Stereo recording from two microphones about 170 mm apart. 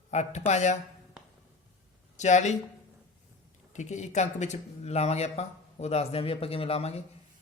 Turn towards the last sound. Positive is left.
turn(degrees=35)  # may be behind; listen again after turning